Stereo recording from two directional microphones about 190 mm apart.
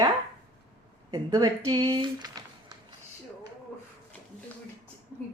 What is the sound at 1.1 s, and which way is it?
Speech, 20° right (ahead or behind).